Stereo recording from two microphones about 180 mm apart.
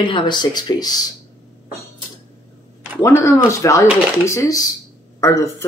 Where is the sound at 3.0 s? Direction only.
15° left (ahead or behind).